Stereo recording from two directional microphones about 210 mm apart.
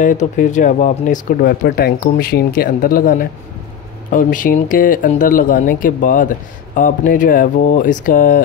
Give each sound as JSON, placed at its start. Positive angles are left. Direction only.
{"t": 0.0, "sound": "speech", "side_deg": 40}